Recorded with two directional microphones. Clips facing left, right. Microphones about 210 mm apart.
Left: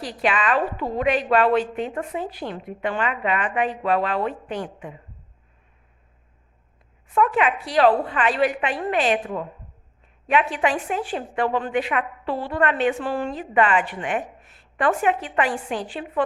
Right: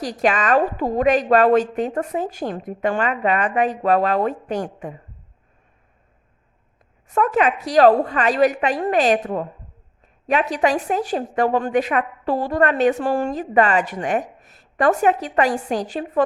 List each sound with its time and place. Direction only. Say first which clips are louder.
0.0 s a woman's voice: right 3 dB; 45° right (ahead or behind)
7.1 s a woman's voice: right 2 dB; 45° right (ahead or behind)